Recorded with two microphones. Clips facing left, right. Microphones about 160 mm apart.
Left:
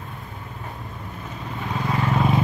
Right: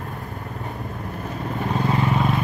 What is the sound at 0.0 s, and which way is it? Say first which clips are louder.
Vehicle: right 5 dB; 40° right (ahead or behind).